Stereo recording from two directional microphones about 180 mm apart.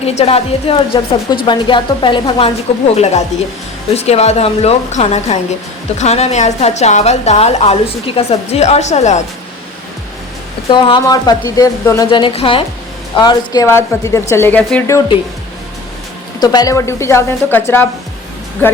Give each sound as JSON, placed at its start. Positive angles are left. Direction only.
{"t": 0.0, "sound": "a woman's voice", "side_deg": 35}
{"t": 2.9, "sound": "a woman's voice", "side_deg": 40}
{"t": 10.7, "sound": "a woman's voice", "side_deg": 25}
{"t": 16.4, "sound": "a woman's voice", "side_deg": 20}